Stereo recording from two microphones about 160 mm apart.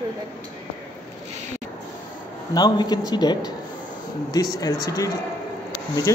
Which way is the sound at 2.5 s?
25° left (ahead or behind).